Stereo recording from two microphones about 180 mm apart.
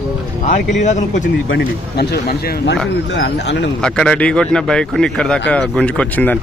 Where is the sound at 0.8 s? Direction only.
40° left (ahead or behind).